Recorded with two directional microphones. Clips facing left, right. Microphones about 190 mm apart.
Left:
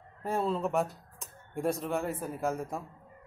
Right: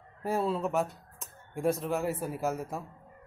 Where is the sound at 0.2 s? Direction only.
5° right (ahead or behind).